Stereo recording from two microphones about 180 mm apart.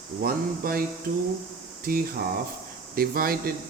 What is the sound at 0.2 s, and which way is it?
Speech, 55° right (ahead or behind).